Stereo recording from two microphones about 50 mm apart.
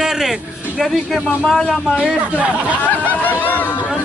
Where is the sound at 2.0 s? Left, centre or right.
Right.